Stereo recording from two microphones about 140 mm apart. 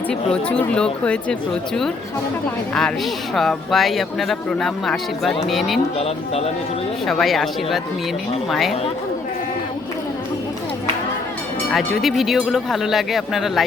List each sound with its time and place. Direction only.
0.1 s speech: 5° left (ahead or behind)
3.3 s speech: centre (ahead or behind)
6.0 s speech: 45° left (ahead or behind)
7.1 s speech: centre (ahead or behind)
11.7 s speech: centre (ahead or behind)